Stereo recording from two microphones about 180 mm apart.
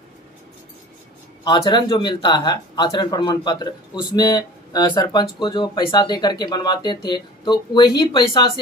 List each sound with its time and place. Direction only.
1.4 s speech: 25° left (ahead or behind)